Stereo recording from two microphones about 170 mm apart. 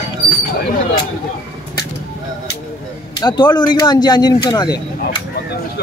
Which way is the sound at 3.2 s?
25° left (ahead or behind).